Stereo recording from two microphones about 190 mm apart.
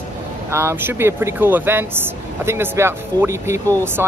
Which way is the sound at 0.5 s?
15° right (ahead or behind).